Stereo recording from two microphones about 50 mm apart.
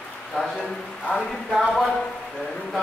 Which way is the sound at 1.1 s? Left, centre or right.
Centre.